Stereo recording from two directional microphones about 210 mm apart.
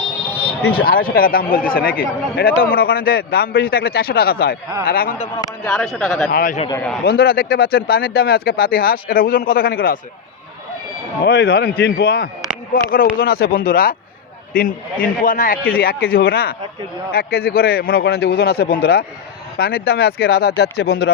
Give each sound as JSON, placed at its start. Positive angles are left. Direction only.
{"t": 0.7, "sound": "speech", "side_deg": 45}
{"t": 5.6, "sound": "speech", "side_deg": 5}
{"t": 6.3, "sound": "a man's voice", "side_deg": 40}
{"t": 11.2, "sound": "speech", "side_deg": 50}